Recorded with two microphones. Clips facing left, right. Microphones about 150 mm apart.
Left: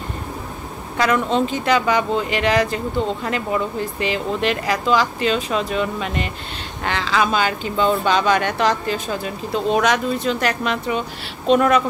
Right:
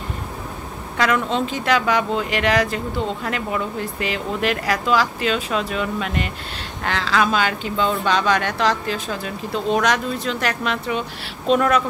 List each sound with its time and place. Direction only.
0.9 s speech: centre (ahead or behind)